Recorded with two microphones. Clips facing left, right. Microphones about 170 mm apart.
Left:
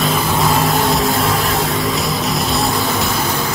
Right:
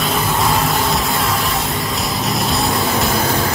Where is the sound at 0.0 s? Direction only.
Centre (ahead or behind).